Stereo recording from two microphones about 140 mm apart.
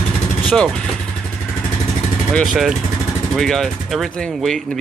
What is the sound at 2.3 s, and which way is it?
Speech, centre (ahead or behind).